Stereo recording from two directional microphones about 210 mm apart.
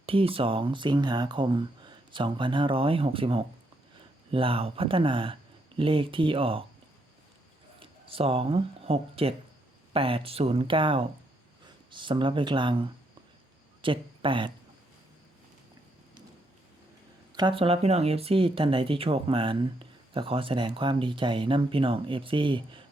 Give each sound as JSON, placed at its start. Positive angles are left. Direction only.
{"t": 0.0, "sound": "speech", "side_deg": -25}
{"t": 7.8, "sound": "speech", "side_deg": -25}
{"t": 17.3, "sound": "speech", "side_deg": -25}